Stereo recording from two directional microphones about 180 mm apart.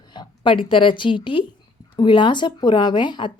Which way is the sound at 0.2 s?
30° left (ahead or behind).